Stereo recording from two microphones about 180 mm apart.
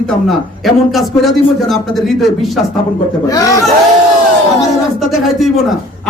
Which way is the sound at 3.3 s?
20° left (ahead or behind).